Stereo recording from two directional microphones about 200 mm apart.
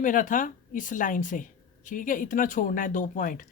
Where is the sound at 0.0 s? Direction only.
40° left (ahead or behind).